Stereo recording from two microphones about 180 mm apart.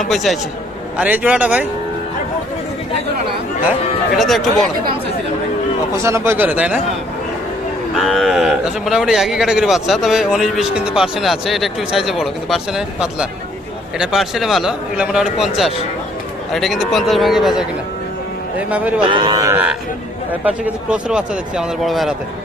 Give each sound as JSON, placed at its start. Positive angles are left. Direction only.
{"t": 0.0, "sound": "speech", "side_deg": 0}
{"t": 4.2, "sound": "speech", "side_deg": 0}
{"t": 6.0, "sound": "speech", "side_deg": -15}
{"t": 7.9, "sound": "speech", "side_deg": 0}
{"t": 18.7, "sound": "speech", "side_deg": -5}
{"t": 19.0, "sound": "speech", "side_deg": -25}
{"t": 20.4, "sound": "speech", "side_deg": -5}